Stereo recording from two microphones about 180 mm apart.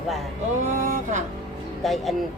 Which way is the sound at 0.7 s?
45° right (ahead or behind).